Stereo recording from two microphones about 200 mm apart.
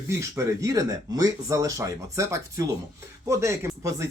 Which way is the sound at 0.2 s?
15° right (ahead or behind).